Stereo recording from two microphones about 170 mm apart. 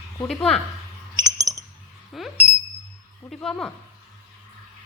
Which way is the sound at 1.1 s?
20° right (ahead or behind).